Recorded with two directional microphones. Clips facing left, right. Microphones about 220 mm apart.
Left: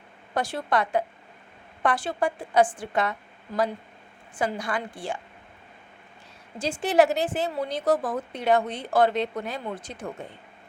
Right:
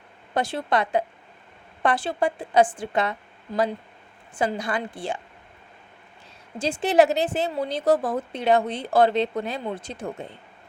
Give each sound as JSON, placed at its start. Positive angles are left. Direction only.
{"t": 0.3, "sound": "a woman's voice", "side_deg": -25}
{"t": 6.6, "sound": "a woman's voice", "side_deg": -25}